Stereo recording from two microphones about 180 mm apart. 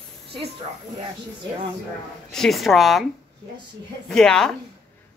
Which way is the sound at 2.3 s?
Centre (ahead or behind).